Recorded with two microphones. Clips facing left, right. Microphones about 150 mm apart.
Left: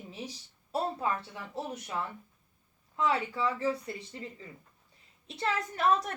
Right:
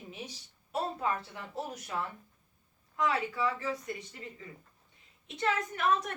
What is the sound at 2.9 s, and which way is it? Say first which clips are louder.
A woman's voice: left 1 dB; 30° left (ahead or behind).